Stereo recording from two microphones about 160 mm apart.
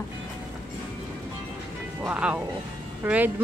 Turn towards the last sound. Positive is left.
turn(degrees=-10)  # may be behind; listen again after turning